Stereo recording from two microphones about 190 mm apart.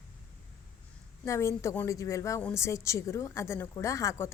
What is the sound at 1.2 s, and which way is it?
A woman's voice, 15° left (ahead or behind).